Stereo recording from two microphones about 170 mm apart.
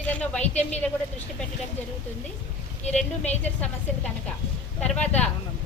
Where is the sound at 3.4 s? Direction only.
10° left (ahead or behind).